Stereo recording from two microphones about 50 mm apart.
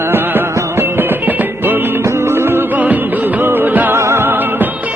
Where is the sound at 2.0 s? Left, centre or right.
Right.